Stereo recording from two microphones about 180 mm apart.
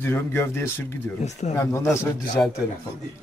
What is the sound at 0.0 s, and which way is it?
Speech, 15° left (ahead or behind).